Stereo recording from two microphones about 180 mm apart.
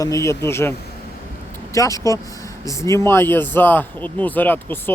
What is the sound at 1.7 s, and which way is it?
Speech, 20° left (ahead or behind).